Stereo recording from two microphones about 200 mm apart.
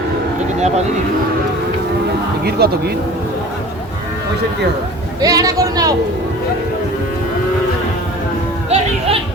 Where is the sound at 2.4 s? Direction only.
50° right (ahead or behind).